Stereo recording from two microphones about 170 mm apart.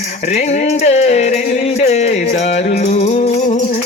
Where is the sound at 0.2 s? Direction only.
40° left (ahead or behind).